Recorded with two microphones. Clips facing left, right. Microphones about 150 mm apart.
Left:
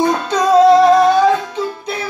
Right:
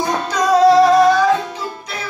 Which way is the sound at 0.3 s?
25° left (ahead or behind).